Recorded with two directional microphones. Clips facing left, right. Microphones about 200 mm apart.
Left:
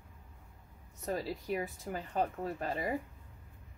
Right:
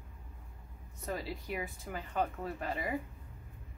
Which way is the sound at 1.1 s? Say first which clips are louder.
Left 3 dB; 40° left (ahead or behind).